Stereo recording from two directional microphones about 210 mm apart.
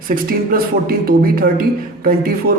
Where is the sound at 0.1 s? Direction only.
45° right (ahead or behind).